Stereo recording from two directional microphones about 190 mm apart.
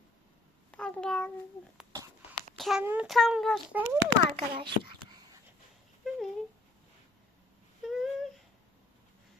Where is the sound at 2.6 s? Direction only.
Centre (ahead or behind).